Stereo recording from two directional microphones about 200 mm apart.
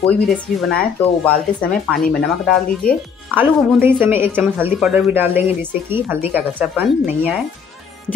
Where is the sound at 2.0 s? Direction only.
45° left (ahead or behind).